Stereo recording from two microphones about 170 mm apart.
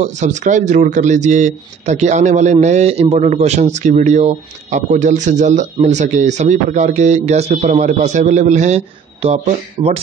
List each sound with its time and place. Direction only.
0.0 s speech: 45° right (ahead or behind)